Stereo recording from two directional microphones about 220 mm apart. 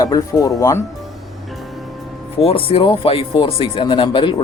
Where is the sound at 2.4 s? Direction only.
25° left (ahead or behind).